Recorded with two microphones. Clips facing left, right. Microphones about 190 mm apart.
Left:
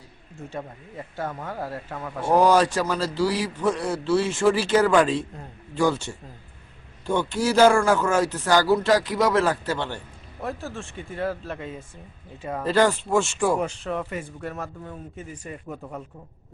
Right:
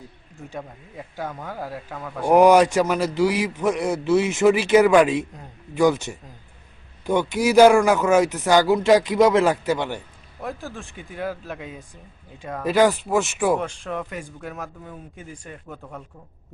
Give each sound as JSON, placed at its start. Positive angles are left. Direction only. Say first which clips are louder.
{"t": 0.3, "sound": "a man's voice", "louder": "left 1 dB", "side_deg": 0}
{"t": 2.2, "sound": "a man's voice", "louder": "right 4 dB", "side_deg": -20}
{"t": 10.4, "sound": "a man's voice", "louder": "even", "side_deg": 0}
{"t": 12.6, "sound": "speech", "louder": "right 3 dB", "side_deg": -15}
{"t": 13.6, "sound": "a man's voice", "louder": "left 1 dB", "side_deg": 5}